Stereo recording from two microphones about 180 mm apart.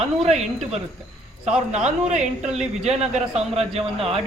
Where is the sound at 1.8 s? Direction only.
5° right (ahead or behind).